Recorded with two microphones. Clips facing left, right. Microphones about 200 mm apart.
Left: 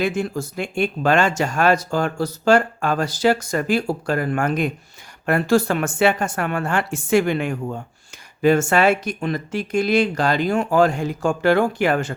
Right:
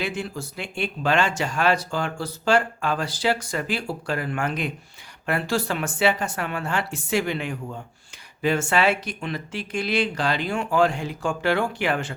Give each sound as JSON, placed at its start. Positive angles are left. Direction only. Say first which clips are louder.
{"t": 0.0, "sound": "speech", "louder": "left 7 dB", "side_deg": 45}